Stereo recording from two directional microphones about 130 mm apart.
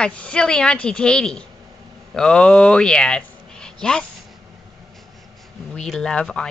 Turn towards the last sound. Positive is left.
turn(degrees=5)  # may be behind; listen again after turning